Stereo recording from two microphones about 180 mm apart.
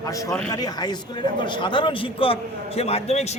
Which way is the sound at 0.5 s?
20° left (ahead or behind).